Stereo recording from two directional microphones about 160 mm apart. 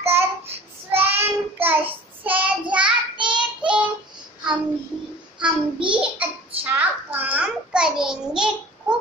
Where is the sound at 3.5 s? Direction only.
5° right (ahead or behind).